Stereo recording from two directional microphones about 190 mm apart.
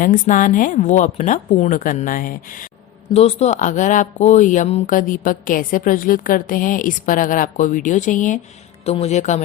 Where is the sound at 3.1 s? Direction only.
35° left (ahead or behind).